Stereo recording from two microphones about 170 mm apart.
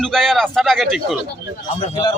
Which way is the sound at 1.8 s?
30° left (ahead or behind).